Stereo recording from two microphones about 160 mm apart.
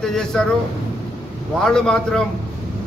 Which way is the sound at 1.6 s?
5° left (ahead or behind).